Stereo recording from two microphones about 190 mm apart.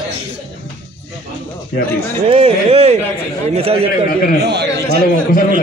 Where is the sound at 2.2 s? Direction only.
30° right (ahead or behind).